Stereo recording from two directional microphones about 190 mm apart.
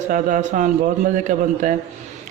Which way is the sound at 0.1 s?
40° right (ahead or behind).